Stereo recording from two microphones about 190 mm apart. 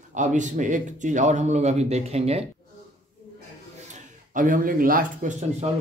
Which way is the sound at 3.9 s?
45° right (ahead or behind).